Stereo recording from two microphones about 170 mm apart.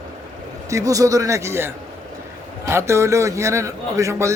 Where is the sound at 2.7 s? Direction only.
15° right (ahead or behind).